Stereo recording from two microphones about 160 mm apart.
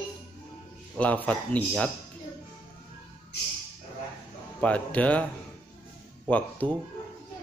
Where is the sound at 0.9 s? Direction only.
10° left (ahead or behind).